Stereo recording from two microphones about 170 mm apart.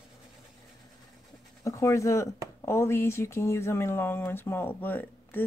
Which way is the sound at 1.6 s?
20° left (ahead or behind).